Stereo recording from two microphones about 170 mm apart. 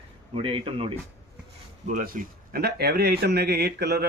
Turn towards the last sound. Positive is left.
turn(degrees=-75)  # may be behind; listen again after turning